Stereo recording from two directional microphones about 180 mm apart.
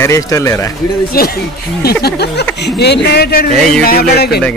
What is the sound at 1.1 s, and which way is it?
Speech, 55° left (ahead or behind).